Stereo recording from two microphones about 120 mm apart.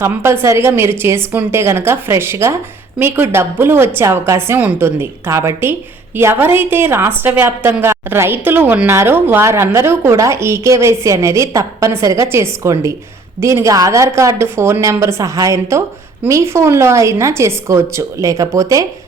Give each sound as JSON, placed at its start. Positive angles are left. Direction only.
{"t": 0.0, "sound": "a woman's voice", "side_deg": -20}